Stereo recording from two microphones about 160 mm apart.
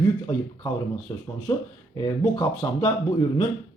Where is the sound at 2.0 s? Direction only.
25° left (ahead or behind).